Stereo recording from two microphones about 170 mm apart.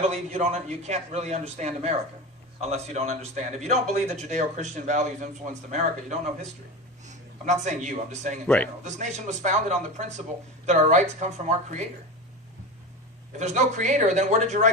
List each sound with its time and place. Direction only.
0.1 s a man's voice: 45° right (ahead or behind)
8.4 s a man's voice: 10° left (ahead or behind)
8.8 s a man's voice: 45° right (ahead or behind)
13.4 s a man's voice: 45° right (ahead or behind)